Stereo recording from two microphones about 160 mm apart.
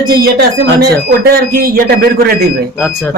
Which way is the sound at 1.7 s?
70° right (ahead or behind).